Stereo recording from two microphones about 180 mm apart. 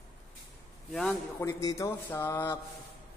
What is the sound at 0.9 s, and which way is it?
Speech, centre (ahead or behind).